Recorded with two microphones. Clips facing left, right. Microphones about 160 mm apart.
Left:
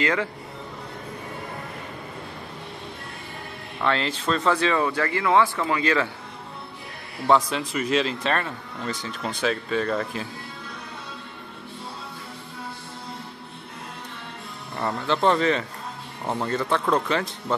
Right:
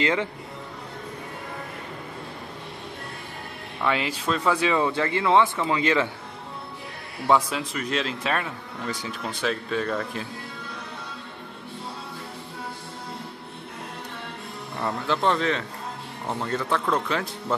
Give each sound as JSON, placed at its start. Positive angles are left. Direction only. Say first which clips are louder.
{"t": 0.0, "sound": "speech", "louder": "even", "side_deg": -20}
{"t": 3.8, "sound": "speech", "louder": "left 1 dB", "side_deg": -10}
{"t": 7.2, "sound": "a man's voice", "louder": "left 1 dB", "side_deg": -10}
{"t": 7.7, "sound": "speech", "louder": "left 6 dB", "side_deg": 0}
{"t": 14.8, "sound": "speech", "louder": "left 2 dB", "side_deg": 0}